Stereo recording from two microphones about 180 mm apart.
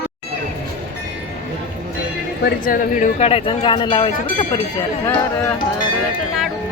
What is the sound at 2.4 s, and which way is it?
Speech, 50° left (ahead or behind).